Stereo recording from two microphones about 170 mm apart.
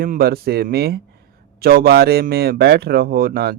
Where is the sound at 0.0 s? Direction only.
60° right (ahead or behind).